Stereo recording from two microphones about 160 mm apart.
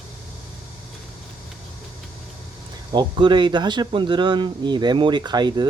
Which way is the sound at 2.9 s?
30° right (ahead or behind).